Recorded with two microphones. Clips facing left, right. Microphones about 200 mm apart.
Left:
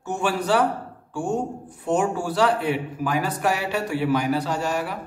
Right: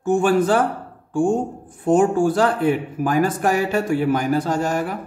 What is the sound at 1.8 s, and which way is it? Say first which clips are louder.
Speech: right 7 dB; 50° right (ahead or behind).